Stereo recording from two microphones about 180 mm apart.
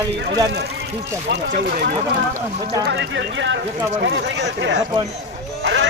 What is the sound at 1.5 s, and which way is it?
Speech, 55° right (ahead or behind).